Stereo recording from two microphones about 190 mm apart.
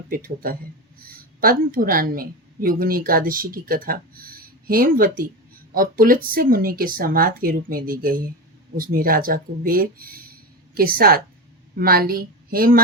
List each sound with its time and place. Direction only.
0.1 s speech: 50° right (ahead or behind)